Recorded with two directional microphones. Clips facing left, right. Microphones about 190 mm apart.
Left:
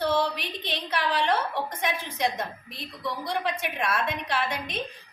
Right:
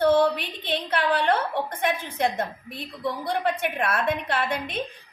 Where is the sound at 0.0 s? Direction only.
55° right (ahead or behind).